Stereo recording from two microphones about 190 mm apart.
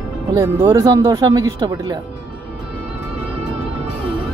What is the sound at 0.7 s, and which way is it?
Speech, 15° right (ahead or behind).